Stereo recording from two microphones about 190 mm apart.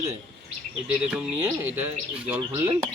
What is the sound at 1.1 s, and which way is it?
Speech, 10° right (ahead or behind).